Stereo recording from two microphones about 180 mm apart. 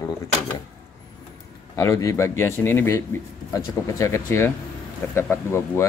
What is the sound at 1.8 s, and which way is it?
Speech, 15° left (ahead or behind).